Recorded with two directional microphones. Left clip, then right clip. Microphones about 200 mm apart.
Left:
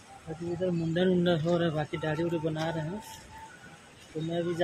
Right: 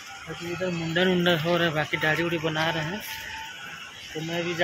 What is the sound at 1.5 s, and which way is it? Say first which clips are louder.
Speech: right 5 dB; centre (ahead or behind).